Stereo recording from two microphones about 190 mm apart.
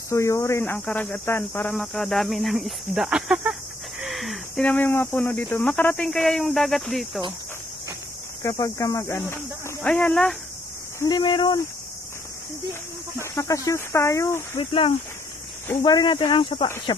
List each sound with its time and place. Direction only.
0.1 s speech: 15° left (ahead or behind); by 3.5 s 5° right (ahead or behind)
4.0 s a sound: centre (ahead or behind)
5.4 s speech: 10° left (ahead or behind)
8.4 s speech: 15° left (ahead or behind)
11.0 s speech: 20° left (ahead or behind)
13.2 s speech: 15° left (ahead or behind)
14.6 s speech: 25° left (ahead or behind)